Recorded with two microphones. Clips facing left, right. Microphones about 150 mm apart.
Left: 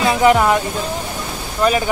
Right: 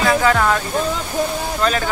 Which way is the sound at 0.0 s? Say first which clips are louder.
Left 3 dB; 20° left (ahead or behind).